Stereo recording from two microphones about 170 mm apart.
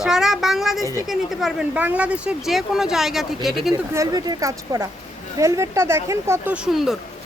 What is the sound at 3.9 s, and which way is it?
Speech, 25° right (ahead or behind).